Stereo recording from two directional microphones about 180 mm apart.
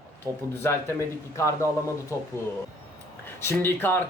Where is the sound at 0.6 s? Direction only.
10° left (ahead or behind).